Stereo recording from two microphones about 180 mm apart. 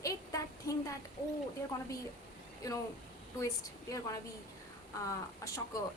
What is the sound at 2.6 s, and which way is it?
A woman's voice, 20° left (ahead or behind).